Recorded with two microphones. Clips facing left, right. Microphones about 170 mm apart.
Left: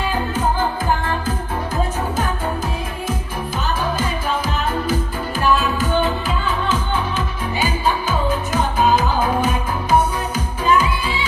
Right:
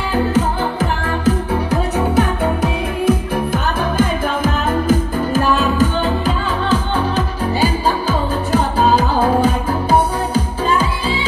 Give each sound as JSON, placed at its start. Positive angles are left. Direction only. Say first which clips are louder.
{"t": 0.1, "sound": "music", "louder": "right 4 dB", "side_deg": -80}
{"t": 4.0, "sound": "music", "louder": "right 6 dB", "side_deg": -50}